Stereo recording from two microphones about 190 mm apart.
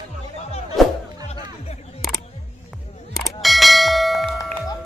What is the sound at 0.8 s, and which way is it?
Music, centre (ahead or behind).